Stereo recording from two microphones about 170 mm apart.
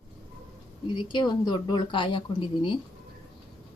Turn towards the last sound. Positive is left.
turn(degrees=30)  # may be behind; listen again after turning